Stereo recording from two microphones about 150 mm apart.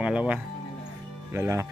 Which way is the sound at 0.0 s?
10° right (ahead or behind).